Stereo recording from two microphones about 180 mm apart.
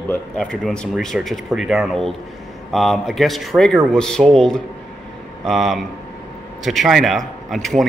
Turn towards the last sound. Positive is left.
turn(degrees=0)  # may be behind; listen again after turning